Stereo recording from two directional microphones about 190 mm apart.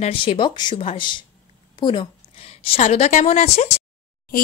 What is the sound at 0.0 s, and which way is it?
A woman's voice, 30° left (ahead or behind).